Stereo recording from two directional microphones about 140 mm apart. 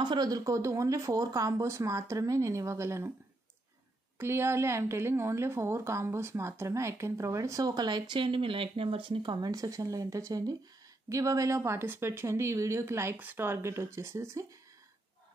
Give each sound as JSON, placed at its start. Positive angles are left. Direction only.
{"t": 0.0, "sound": "a woman's voice", "side_deg": -30}
{"t": 4.2, "sound": "a woman's voice", "side_deg": -20}